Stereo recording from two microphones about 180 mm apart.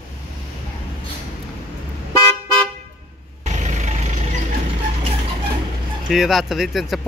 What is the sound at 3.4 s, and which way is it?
Vehicle, 40° right (ahead or behind).